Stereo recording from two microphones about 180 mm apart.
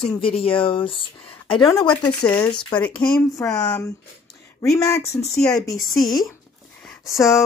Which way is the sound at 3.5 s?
20° left (ahead or behind).